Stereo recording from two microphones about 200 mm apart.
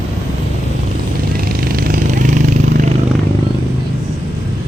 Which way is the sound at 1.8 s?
45° right (ahead or behind).